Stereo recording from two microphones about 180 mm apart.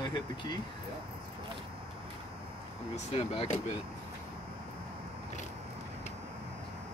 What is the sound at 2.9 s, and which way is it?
Speech, 35° left (ahead or behind).